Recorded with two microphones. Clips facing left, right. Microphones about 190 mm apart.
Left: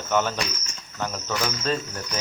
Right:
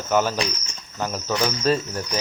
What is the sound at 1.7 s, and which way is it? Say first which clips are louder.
Speech: right 6 dB; 10° right (ahead or behind).